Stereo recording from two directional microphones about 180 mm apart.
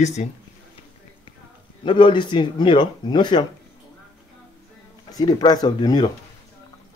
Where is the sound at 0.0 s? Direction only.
40° left (ahead or behind).